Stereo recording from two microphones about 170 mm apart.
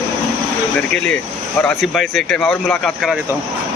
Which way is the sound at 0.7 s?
5° left (ahead or behind).